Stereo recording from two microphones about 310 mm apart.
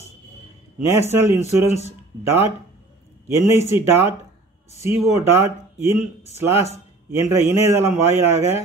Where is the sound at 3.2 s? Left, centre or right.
Centre.